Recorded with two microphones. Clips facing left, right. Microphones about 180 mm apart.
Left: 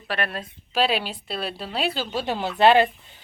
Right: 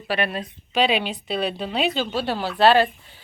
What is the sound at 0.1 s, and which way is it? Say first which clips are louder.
A woman's voice: right 3 dB; centre (ahead or behind).